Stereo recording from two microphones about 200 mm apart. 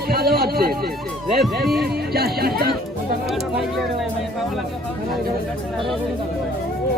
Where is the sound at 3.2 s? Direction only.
Centre (ahead or behind).